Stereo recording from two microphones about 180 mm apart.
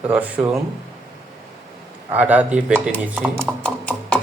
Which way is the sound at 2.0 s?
10° right (ahead or behind).